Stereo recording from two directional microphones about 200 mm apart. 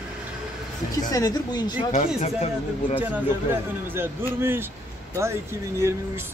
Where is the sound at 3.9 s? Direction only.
10° right (ahead or behind).